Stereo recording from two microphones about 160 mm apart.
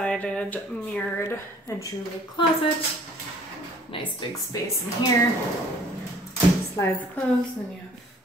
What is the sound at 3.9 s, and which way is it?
Speech, 35° left (ahead or behind).